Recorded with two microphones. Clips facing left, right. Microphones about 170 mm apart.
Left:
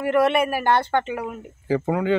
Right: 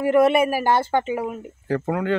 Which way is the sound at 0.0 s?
5° right (ahead or behind).